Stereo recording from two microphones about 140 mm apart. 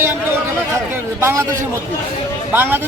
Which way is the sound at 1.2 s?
20° right (ahead or behind).